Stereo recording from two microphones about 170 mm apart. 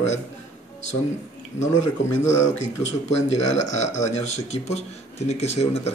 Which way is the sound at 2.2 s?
45° left (ahead or behind).